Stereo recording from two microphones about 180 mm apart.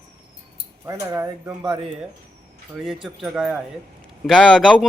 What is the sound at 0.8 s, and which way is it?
Speech, 15° right (ahead or behind).